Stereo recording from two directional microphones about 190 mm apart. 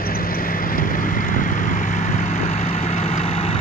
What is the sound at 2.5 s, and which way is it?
Vehicle, 35° left (ahead or behind).